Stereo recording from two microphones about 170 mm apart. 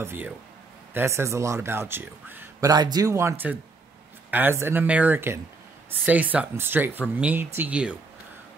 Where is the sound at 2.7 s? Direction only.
25° right (ahead or behind).